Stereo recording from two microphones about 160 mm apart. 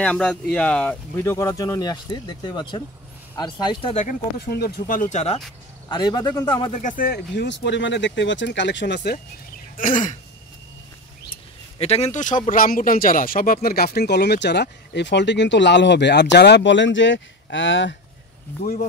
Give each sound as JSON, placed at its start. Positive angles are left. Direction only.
{"t": 0.0, "sound": "speech", "side_deg": 5}
{"t": 3.9, "sound": "throat clearing", "side_deg": 50}
{"t": 4.4, "sound": "speech", "side_deg": 85}
{"t": 5.9, "sound": "speech", "side_deg": 30}
{"t": 6.7, "sound": "speech", "side_deg": 50}
{"t": 9.8, "sound": "throat clearing", "side_deg": 55}
{"t": 11.8, "sound": "speech", "side_deg": 40}